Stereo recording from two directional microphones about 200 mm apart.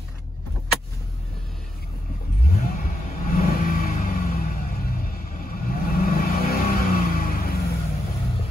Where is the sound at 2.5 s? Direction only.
45° left (ahead or behind).